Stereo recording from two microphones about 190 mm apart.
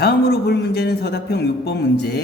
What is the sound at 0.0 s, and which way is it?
Speech, 60° left (ahead or behind).